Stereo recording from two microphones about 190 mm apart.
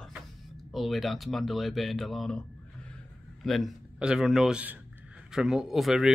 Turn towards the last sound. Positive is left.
turn(degrees=0)  # may be behind; listen again after turning